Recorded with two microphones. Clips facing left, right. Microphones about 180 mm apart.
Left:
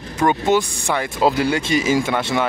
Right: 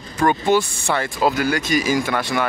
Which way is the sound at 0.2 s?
20° left (ahead or behind).